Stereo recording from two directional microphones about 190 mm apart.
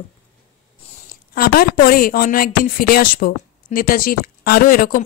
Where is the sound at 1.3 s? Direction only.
50° left (ahead or behind).